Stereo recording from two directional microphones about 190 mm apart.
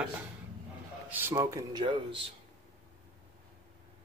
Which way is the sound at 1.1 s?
15° right (ahead or behind).